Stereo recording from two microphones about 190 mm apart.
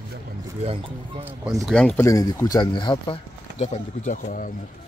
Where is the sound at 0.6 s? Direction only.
25° right (ahead or behind).